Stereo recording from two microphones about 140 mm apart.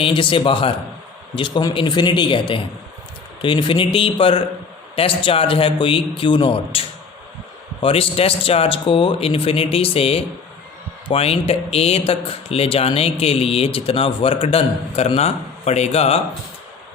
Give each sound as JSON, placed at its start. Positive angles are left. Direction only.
{"t": 0.0, "sound": "a man's voice", "side_deg": 40}